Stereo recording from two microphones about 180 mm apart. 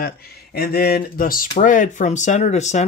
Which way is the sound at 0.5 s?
60° left (ahead or behind).